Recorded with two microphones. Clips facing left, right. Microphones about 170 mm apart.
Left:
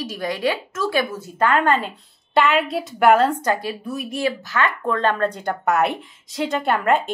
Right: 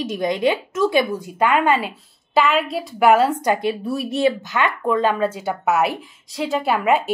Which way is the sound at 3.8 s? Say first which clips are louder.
Right 5 dB; 30° right (ahead or behind).